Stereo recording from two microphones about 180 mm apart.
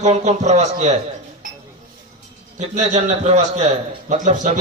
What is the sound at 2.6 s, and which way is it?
A man's voice, 40° right (ahead or behind).